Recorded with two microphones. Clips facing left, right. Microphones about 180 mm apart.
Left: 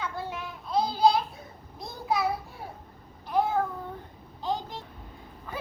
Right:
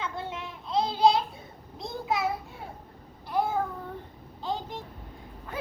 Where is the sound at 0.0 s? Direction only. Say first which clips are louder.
Even; 25° right (ahead or behind).